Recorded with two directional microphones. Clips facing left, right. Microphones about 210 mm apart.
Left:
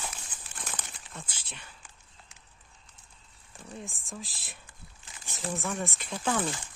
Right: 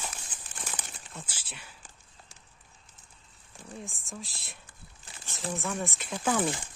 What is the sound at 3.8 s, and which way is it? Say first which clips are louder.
Speech: even; centre (ahead or behind).